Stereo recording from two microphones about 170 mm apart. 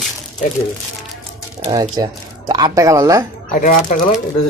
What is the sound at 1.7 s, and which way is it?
Speech, 20° right (ahead or behind).